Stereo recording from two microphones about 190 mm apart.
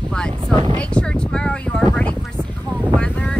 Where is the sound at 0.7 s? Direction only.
5° left (ahead or behind).